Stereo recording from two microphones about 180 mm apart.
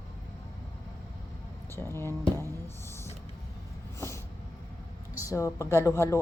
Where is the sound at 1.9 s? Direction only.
15° left (ahead or behind).